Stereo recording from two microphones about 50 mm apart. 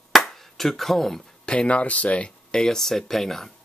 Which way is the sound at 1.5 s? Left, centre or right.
Left.